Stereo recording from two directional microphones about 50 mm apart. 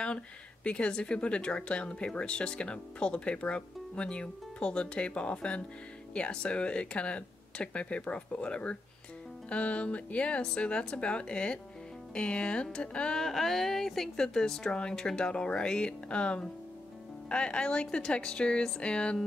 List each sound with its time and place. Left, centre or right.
0.7 s speech: left
13.2 s a woman's voice: centre; by 19.1 s left